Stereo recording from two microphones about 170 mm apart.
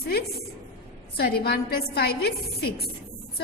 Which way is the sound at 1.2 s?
70° left (ahead or behind).